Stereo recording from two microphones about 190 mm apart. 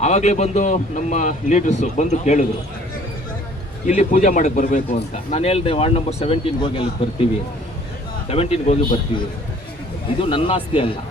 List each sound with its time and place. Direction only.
0.0 s speech: 40° left (ahead or behind)
3.8 s speech: 40° left (ahead or behind)
8.3 s speech: 30° left (ahead or behind)